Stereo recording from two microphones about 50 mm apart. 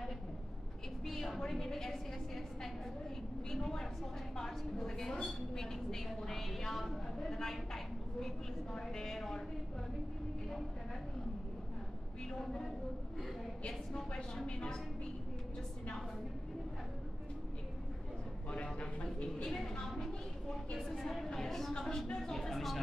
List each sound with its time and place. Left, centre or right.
1.0 s a woman's voice: centre
4.4 s a woman's voice: centre
13.7 s a woman's voice: centre
18.5 s speech: left
19.4 s a woman's voice: centre
20.8 s a woman's voice: centre